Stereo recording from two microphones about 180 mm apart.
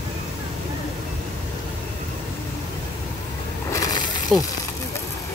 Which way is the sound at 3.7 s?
20° left (ahead or behind).